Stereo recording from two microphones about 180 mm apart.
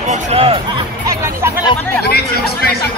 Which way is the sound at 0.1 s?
35° right (ahead or behind).